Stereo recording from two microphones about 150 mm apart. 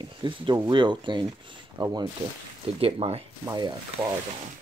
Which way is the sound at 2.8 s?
40° right (ahead or behind).